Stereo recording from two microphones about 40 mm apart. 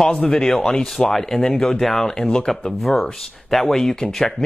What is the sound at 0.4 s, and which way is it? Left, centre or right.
Speech, centre.